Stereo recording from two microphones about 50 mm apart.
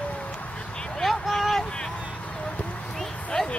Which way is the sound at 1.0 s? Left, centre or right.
Centre.